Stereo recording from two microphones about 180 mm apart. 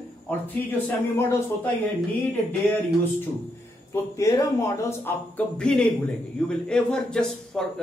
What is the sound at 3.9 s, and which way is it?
A man's voice, 20° left (ahead or behind).